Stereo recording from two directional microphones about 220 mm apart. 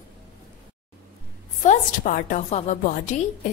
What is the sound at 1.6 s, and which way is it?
A woman's voice, 35° left (ahead or behind).